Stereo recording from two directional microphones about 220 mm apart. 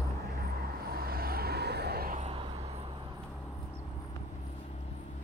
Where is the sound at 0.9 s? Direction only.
45° right (ahead or behind).